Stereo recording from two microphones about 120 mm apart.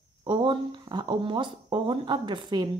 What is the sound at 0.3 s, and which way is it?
A woman's voice, 40° right (ahead or behind).